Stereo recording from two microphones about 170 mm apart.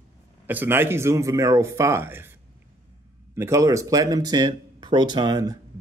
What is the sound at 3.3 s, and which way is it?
Speech, 15° right (ahead or behind).